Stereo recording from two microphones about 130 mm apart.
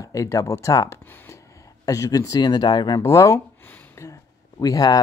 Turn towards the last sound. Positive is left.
turn(degrees=30)  # may be behind; listen again after turning